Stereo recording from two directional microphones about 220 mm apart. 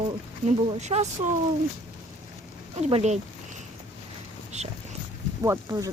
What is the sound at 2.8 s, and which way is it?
Speech, 30° right (ahead or behind).